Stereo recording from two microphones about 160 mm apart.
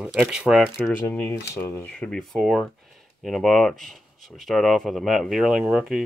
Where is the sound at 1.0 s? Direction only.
15° left (ahead or behind).